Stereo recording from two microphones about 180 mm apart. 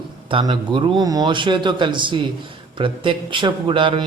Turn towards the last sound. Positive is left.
turn(degrees=-25)  # may be behind; listen again after turning